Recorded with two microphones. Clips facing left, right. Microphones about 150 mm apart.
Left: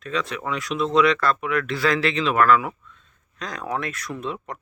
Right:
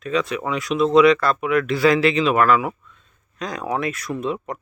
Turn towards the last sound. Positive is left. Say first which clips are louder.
# right 5 dB
turn(degrees=-5)  # may be behind; listen again after turning